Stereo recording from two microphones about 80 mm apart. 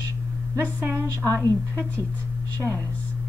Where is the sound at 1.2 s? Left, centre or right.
Right.